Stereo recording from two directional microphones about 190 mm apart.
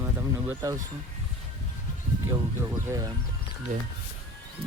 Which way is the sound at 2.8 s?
15° right (ahead or behind).